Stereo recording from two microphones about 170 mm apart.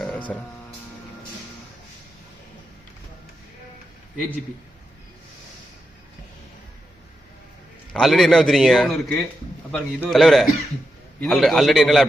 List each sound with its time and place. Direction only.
0.0 s music: 5° left (ahead or behind)
7.9 s a man's voice: centre (ahead or behind)